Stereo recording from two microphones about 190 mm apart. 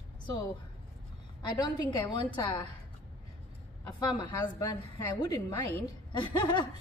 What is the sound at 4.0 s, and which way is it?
A woman's voice, 25° left (ahead or behind).